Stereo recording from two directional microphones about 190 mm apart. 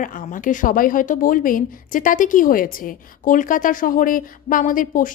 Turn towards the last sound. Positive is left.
turn(degrees=45)  # may be behind; listen again after turning